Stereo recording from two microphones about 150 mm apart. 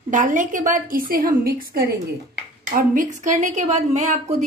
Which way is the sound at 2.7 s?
60° right (ahead or behind).